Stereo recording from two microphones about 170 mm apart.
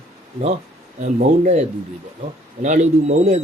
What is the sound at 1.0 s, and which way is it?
Speech, 45° right (ahead or behind).